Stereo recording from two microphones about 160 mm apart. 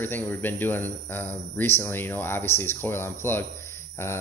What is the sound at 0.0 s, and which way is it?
Speech, 10° left (ahead or behind).